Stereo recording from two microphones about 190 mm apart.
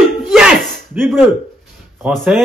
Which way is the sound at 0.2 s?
5° right (ahead or behind).